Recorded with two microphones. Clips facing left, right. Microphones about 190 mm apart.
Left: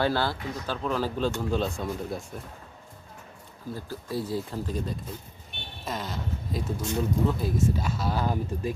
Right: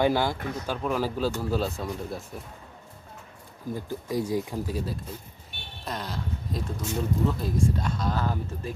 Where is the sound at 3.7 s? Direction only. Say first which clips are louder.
Right 3 dB; 15° right (ahead or behind); by 8.7 s 15° left (ahead or behind).